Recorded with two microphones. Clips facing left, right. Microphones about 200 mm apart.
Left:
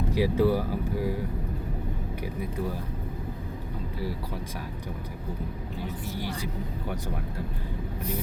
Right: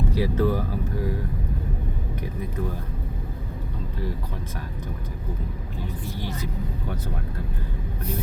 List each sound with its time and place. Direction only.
0.1 s speech: 10° left (ahead or behind)
2.2 s speech: 10° left (ahead or behind)
6.1 s speech: 10° left (ahead or behind)